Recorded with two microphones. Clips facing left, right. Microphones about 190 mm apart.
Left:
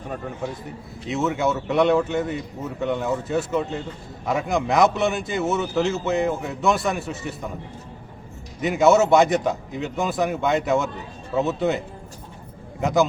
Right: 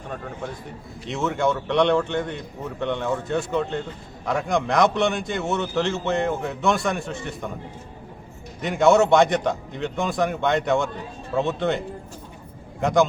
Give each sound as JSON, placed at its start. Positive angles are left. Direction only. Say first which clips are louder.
{"t": 1.0, "sound": "a man's voice", "louder": "left 1 dB", "side_deg": 0}
{"t": 8.6, "sound": "a man's voice", "louder": "even", "side_deg": 5}
{"t": 12.8, "sound": "a man's voice", "louder": "right 1 dB", "side_deg": 5}